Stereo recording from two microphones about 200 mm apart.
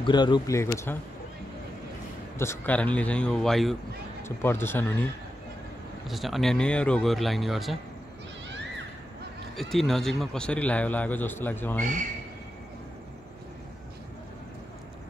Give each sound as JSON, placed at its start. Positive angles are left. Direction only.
{"t": 0.0, "sound": "speech", "side_deg": 20}
{"t": 2.3, "sound": "a man's voice", "side_deg": 15}
{"t": 6.0, "sound": "speech", "side_deg": 0}
{"t": 9.6, "sound": "a man's voice", "side_deg": 0}
{"t": 11.8, "sound": "speech", "side_deg": -40}